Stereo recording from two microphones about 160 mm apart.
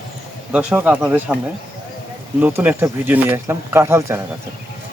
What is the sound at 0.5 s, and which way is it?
Speech, 10° right (ahead or behind).